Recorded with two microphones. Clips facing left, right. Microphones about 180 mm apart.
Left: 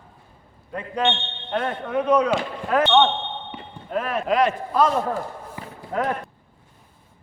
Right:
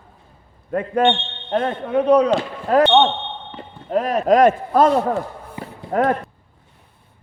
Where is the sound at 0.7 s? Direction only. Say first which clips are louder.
Right 7 dB; 50° right (ahead or behind).